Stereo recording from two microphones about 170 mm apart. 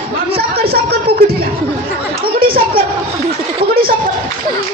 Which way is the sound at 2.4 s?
60° right (ahead or behind).